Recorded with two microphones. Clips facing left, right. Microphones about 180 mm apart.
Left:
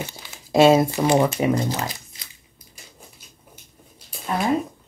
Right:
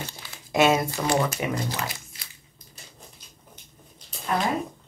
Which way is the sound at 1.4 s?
40° left (ahead or behind).